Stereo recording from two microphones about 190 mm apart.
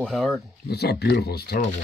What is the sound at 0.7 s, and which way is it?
Speech, 60° left (ahead or behind).